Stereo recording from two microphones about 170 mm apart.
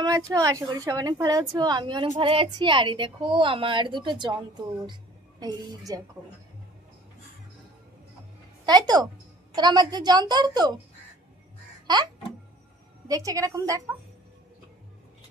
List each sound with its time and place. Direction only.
0.0 s a woman's voice: 20° right (ahead or behind)
5.4 s a woman's voice: 20° right (ahead or behind)
8.6 s a woman's voice: 25° right (ahead or behind)
13.1 s a woman's voice: 20° right (ahead or behind)